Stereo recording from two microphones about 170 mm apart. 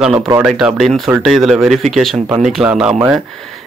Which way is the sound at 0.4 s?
5° right (ahead or behind).